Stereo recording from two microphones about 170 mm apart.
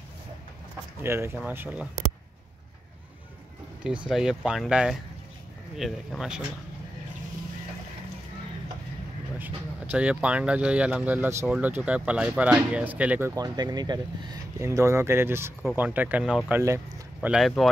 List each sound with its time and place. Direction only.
1.0 s speech: 15° right (ahead or behind)
3.8 s speech: 5° right (ahead or behind)
9.4 s speech: 10° right (ahead or behind)
13.3 s speech: 20° right (ahead or behind)
17.3 s speech: centre (ahead or behind)